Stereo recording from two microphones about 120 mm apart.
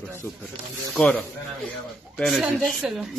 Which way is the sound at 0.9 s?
10° left (ahead or behind).